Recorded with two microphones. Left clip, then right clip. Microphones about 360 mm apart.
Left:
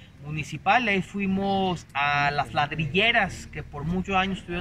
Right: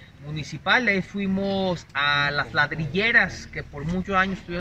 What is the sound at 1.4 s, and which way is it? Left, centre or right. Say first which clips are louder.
Speech: left 1 dB; left.